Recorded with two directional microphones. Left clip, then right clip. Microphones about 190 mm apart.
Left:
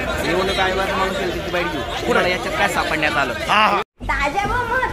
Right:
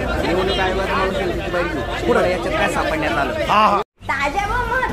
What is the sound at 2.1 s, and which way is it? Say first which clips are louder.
Speech: right 1 dB; 20° left (ahead or behind).